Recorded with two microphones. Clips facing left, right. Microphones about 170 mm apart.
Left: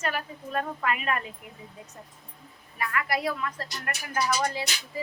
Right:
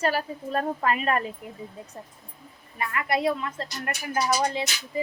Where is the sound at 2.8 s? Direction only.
25° right (ahead or behind).